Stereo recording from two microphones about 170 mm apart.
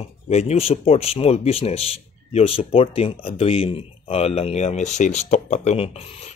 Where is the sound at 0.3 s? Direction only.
40° left (ahead or behind).